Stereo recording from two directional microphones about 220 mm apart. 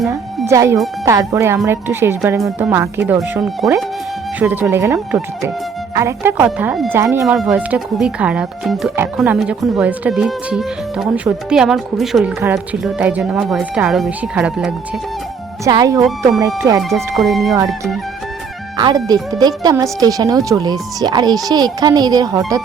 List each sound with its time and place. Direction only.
0.1 s speech: 15° right (ahead or behind)
15.6 s speech: 15° right (ahead or behind)
17.2 s speech: centre (ahead or behind)
18.8 s speech: 20° right (ahead or behind)